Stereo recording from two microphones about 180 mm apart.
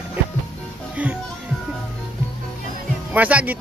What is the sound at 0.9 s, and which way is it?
Speech, 10° right (ahead or behind).